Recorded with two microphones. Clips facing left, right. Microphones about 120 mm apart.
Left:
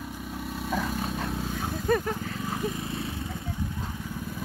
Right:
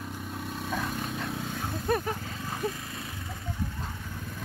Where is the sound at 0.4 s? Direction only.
Centre (ahead or behind).